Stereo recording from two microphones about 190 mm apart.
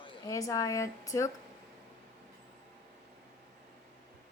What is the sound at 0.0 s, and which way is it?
A woman's voice, 15° left (ahead or behind).